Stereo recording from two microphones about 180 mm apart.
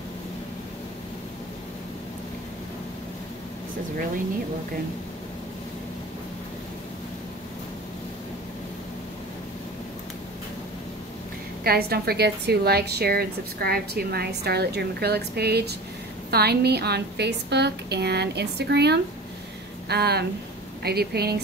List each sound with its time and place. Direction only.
11.6 s a woman's voice: 60° right (ahead or behind)